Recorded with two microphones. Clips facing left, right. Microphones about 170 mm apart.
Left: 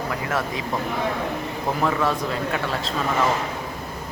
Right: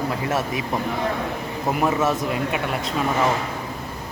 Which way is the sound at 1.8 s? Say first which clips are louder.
Right 2 dB; 20° right (ahead or behind).